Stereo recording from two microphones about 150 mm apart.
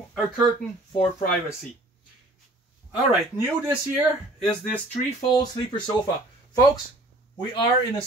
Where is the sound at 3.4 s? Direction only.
15° right (ahead or behind).